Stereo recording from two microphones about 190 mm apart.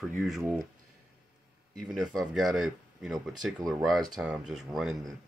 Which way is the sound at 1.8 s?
Centre (ahead or behind).